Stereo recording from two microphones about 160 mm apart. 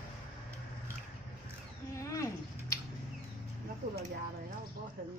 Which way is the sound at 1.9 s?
20° left (ahead or behind).